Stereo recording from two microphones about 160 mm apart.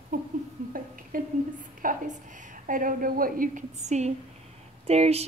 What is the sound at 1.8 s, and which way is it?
A woman's voice, 55° right (ahead or behind).